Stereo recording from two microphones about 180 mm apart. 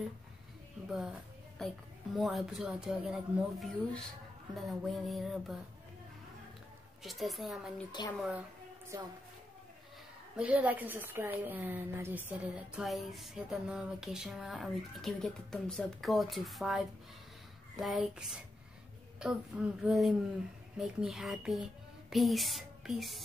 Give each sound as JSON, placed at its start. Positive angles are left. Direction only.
{"t": 0.8, "sound": "a woman's voice", "side_deg": 0}
{"t": 7.0, "sound": "a woman's voice", "side_deg": 0}
{"t": 8.9, "sound": "a woman's voice", "side_deg": -20}
{"t": 10.3, "sound": "a woman's voice", "side_deg": -10}